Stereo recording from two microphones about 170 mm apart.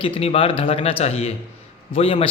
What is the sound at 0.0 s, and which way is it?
Speech, 35° left (ahead or behind).